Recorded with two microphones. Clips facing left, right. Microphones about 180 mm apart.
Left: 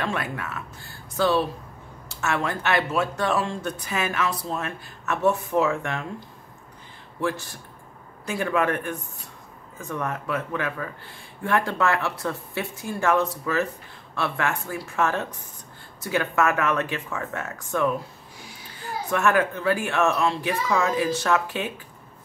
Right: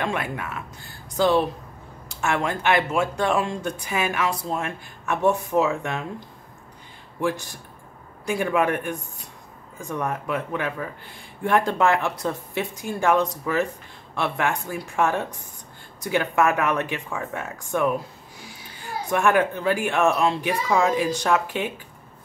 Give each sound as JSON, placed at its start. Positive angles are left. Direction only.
{"t": 0.0, "sound": "speech", "side_deg": -15}
{"t": 19.0, "sound": "speech", "side_deg": -15}